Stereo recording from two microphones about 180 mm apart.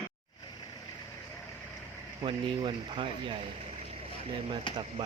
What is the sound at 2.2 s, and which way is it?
Speech, 30° right (ahead or behind).